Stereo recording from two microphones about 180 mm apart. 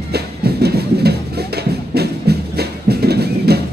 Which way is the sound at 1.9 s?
65° right (ahead or behind).